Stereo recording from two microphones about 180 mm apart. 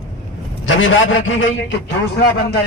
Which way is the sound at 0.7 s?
90° left.